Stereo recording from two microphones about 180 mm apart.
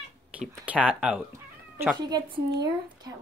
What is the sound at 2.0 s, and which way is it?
Speech, 25° right (ahead or behind).